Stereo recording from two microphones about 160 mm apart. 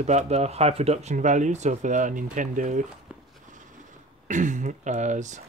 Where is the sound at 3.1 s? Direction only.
10° right (ahead or behind).